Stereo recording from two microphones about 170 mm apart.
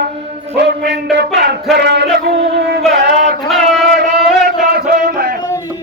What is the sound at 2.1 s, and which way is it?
Music, 65° right (ahead or behind).